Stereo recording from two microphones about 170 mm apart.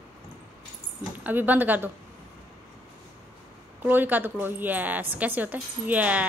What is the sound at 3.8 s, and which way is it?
A woman's voice, 10° right (ahead or behind).